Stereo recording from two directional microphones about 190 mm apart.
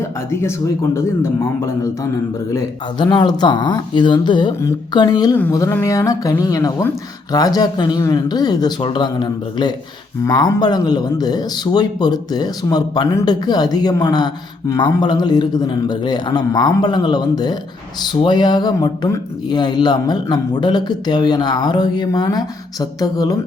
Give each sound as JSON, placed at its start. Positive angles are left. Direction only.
{"t": 0.0, "sound": "speech", "side_deg": 15}